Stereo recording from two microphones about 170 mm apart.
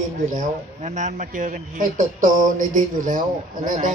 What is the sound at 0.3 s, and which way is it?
A man's voice, 45° right (ahead or behind).